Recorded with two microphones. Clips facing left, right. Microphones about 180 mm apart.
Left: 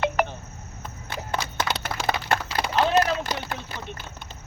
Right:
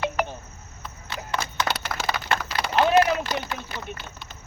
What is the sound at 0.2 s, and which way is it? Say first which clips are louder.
Cricket: left 2 dB; 55° left (ahead or behind).